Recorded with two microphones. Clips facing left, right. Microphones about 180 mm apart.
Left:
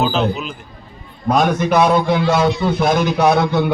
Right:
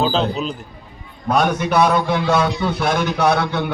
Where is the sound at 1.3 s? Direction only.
10° left (ahead or behind).